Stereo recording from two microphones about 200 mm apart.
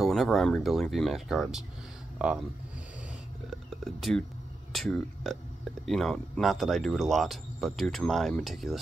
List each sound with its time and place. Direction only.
0.0 s speech: centre (ahead or behind)
3.4 s speech: centre (ahead or behind)